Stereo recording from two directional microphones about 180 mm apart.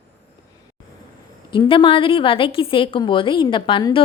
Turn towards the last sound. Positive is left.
turn(degrees=30)  # may be behind; listen again after turning